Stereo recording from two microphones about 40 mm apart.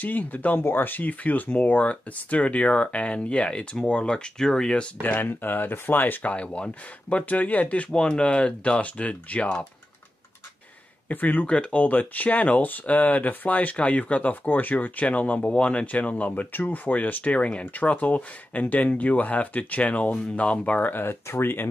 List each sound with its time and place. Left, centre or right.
0.0 s speech: left
0.7 s speech: left; by 4.8 s centre
5.0 s speech: left
6.3 s speech: left
11.1 s speech: left
11.4 s speech: left
11.8 s speech: left
14.3 s speech: left
17.7 s speech: left
20.8 s speech: left